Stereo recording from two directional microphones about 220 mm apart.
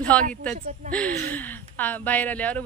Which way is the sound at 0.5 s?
35° right (ahead or behind).